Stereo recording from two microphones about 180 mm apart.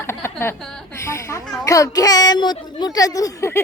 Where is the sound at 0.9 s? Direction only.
15° left (ahead or behind).